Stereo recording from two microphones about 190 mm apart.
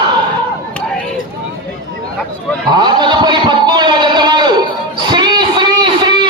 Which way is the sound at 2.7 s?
20° right (ahead or behind).